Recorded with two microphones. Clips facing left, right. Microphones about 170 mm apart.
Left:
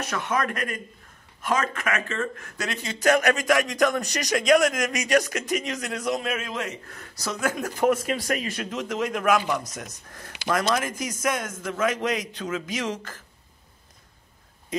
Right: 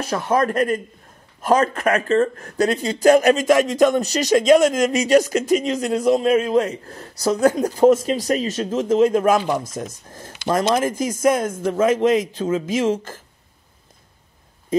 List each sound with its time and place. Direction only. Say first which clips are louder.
0.0 s a man's voice: right 7 dB; 30° right (ahead or behind)